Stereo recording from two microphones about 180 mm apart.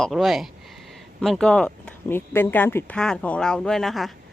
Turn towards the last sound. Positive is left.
turn(degrees=0)  # may be behind; listen again after turning